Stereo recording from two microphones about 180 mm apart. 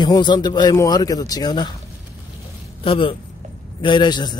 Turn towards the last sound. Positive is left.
turn(degrees=25)  # may be behind; listen again after turning